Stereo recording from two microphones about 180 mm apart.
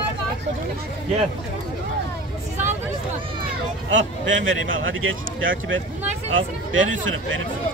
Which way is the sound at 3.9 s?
90° right.